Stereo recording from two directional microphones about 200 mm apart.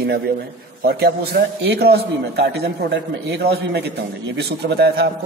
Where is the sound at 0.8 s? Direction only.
50° right (ahead or behind).